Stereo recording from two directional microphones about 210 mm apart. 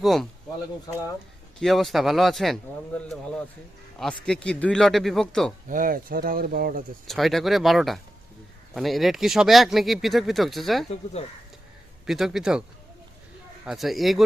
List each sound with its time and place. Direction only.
0.0 s speech: centre (ahead or behind)
0.9 s speech: 20° left (ahead or behind)
1.5 s speech: centre (ahead or behind)
4.0 s speech: 5° left (ahead or behind)
5.6 s speech: 40° right (ahead or behind)
7.1 s speech: centre (ahead or behind)
10.8 s speech: 30° left (ahead or behind)
12.0 s speech: centre (ahead or behind)
13.7 s speech: centre (ahead or behind)